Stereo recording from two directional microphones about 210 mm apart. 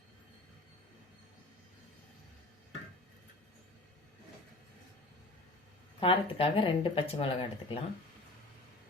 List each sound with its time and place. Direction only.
6.0 s speech: 25° left (ahead or behind)